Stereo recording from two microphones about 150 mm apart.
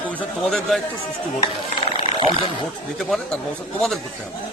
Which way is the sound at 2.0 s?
35° left (ahead or behind).